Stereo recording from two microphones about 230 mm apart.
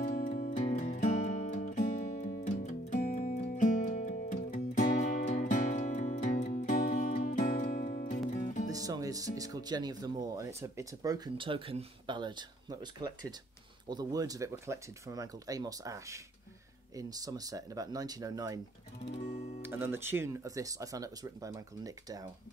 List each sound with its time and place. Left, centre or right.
0.0 s music: left
8.7 s speech: centre
19.1 s guitar: left
19.6 s speech: centre